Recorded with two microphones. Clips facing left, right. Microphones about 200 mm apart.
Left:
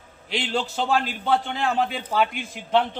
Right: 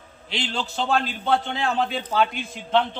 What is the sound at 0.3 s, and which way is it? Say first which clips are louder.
A man's voice: left 3 dB; 10° left (ahead or behind).